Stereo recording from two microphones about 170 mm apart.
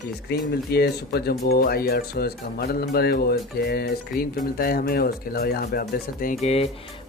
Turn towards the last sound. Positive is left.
turn(degrees=35)  # may be behind; listen again after turning